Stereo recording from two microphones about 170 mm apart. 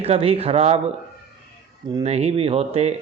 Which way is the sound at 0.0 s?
35° right (ahead or behind).